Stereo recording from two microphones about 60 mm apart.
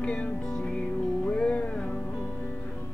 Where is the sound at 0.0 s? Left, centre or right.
Centre.